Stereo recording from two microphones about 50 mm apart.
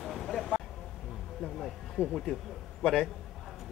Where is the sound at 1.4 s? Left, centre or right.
Centre.